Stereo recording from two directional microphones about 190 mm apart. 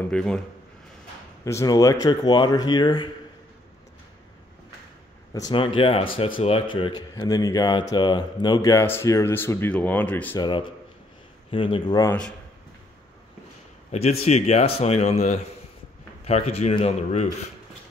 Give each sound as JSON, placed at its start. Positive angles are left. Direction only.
{"t": 0.0, "sound": "speech", "side_deg": 5}
{"t": 1.4, "sound": "speech", "side_deg": 15}
{"t": 5.3, "sound": "speech", "side_deg": 20}
{"t": 10.3, "sound": "speech", "side_deg": 25}
{"t": 12.1, "sound": "speech", "side_deg": 5}
{"t": 14.2, "sound": "speech", "side_deg": 35}